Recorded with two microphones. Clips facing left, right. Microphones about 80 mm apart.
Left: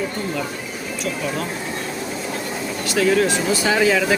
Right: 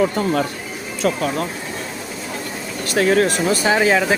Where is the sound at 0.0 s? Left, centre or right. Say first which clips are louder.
Right 7 dB; right.